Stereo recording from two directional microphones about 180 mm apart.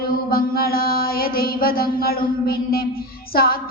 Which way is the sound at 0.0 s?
55° left (ahead or behind).